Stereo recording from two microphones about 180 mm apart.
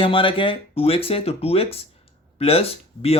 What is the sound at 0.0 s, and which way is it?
Speech, 30° left (ahead or behind).